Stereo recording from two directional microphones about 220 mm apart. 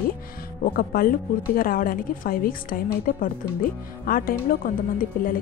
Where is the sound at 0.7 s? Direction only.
40° left (ahead or behind).